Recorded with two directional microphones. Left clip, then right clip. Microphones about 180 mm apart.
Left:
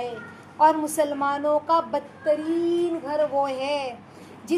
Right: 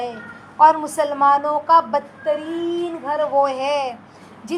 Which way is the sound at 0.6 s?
10° right (ahead or behind).